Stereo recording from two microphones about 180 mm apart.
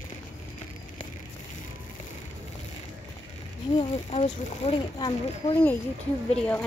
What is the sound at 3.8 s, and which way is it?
Speech, 40° left (ahead or behind).